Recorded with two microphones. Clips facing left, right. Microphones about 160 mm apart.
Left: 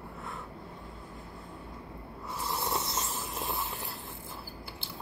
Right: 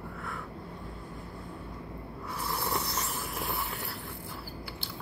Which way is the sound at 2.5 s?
20° left (ahead or behind).